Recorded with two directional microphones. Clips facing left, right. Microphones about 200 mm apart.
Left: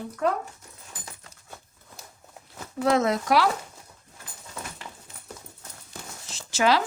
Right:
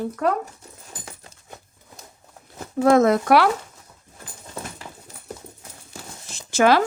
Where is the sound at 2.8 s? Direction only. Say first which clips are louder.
Right 7 dB; 50° right (ahead or behind).